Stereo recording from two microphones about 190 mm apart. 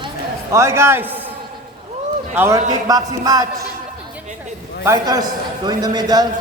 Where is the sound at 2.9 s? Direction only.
20° right (ahead or behind).